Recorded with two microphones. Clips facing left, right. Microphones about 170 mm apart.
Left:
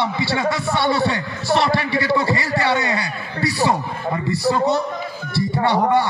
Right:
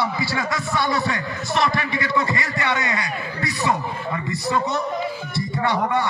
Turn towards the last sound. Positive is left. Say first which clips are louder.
# left 4 dB
turn(degrees=30)  # may be behind; listen again after turning